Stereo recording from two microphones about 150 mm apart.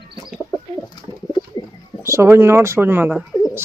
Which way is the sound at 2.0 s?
20° right (ahead or behind).